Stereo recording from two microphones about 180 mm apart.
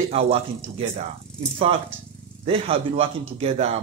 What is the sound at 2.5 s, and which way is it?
A man's voice, 30° right (ahead or behind).